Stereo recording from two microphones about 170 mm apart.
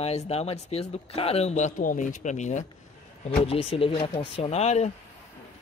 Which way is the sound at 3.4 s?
35° left (ahead or behind).